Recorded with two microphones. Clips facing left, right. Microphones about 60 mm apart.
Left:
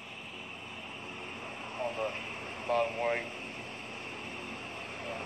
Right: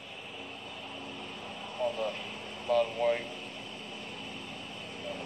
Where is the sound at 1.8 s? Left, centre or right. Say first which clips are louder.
Right 3 dB; left.